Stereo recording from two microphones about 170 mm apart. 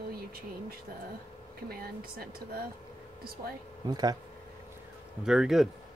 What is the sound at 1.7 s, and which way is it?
Speech, 60° right (ahead or behind).